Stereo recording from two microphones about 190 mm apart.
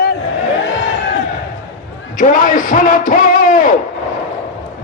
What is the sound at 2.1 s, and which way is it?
A man's voice, 45° left (ahead or behind).